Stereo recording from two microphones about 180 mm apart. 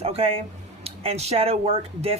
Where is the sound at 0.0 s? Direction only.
35° right (ahead or behind).